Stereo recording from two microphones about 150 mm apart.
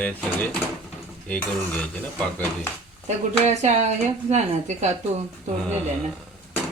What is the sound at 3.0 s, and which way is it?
Speech, 50° right (ahead or behind).